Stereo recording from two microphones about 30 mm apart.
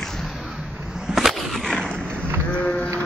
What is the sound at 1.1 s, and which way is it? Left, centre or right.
Skateboard, centre.